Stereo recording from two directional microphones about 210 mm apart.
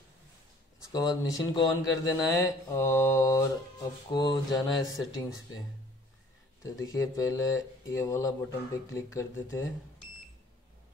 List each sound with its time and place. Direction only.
0.9 s speech: 15° left (ahead or behind)
6.6 s speech: 15° left (ahead or behind)